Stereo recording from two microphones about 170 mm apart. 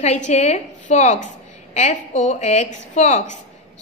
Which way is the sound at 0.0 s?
45° left (ahead or behind).